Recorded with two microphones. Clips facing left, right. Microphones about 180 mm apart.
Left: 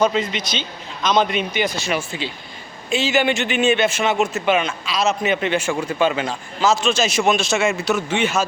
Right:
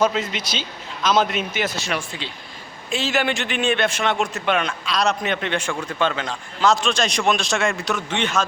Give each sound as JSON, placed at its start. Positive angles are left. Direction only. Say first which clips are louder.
{"t": 0.0, "sound": "a man's voice", "louder": "left 2 dB", "side_deg": -5}